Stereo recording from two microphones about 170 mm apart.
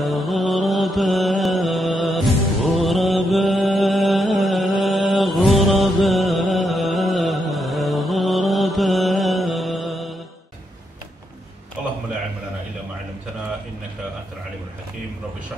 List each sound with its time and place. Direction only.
0.0 s mantra: centre (ahead or behind)